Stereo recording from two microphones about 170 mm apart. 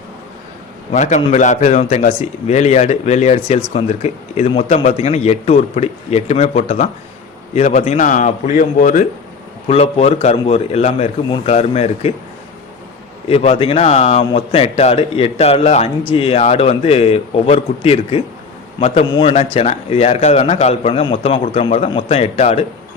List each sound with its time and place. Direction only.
0.9 s a man's voice: 45° left (ahead or behind)
9.6 s speech: 35° left (ahead or behind)
13.2 s speech: 35° left (ahead or behind)